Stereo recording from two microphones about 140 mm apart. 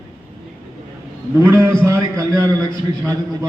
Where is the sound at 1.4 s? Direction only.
20° right (ahead or behind).